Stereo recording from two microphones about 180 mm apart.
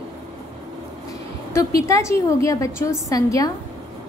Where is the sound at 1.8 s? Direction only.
15° left (ahead or behind).